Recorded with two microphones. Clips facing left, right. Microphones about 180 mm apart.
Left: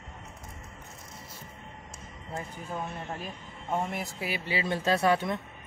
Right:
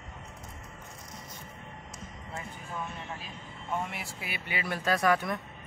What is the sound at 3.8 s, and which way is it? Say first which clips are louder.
Speech: left 6 dB; 40° left (ahead or behind).